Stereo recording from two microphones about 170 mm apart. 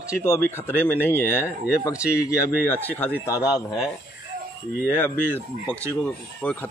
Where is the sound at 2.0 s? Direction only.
5° right (ahead or behind).